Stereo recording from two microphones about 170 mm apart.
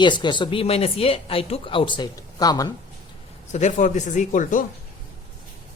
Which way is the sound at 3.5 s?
45° left (ahead or behind).